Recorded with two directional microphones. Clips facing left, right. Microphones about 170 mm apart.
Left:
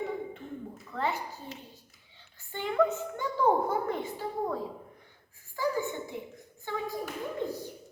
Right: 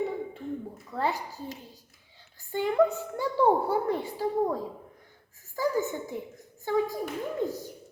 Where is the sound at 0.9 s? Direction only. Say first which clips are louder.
Right 2 dB; 35° right (ahead or behind).